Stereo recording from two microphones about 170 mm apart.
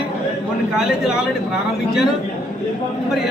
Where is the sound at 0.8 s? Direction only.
5° right (ahead or behind).